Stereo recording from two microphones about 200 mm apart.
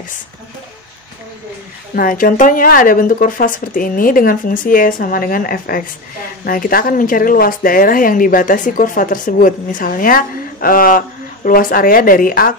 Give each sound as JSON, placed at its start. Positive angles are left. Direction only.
{"t": 2.0, "sound": "a woman's voice", "side_deg": 45}